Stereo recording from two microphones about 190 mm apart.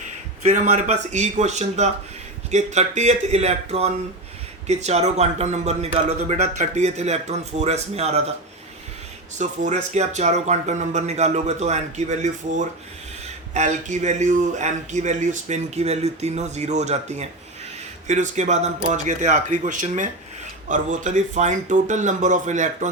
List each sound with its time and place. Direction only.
0.4 s a man's voice: 40° right (ahead or behind)
9.4 s a man's voice: 40° right (ahead or behind)